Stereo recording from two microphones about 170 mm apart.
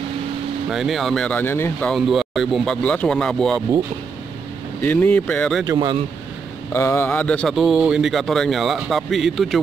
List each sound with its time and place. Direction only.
0.7 s speech: centre (ahead or behind)
1.9 s speech: centre (ahead or behind)
4.8 s speech: 10° left (ahead or behind)
5.7 s speech: 25° right (ahead or behind)
6.7 s speech: 15° left (ahead or behind)